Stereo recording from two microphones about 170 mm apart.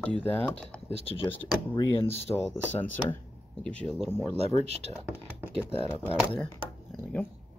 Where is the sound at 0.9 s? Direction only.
35° left (ahead or behind).